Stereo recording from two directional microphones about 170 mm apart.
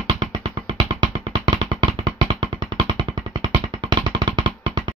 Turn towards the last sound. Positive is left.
turn(degrees=-25)  # may be behind; listen again after turning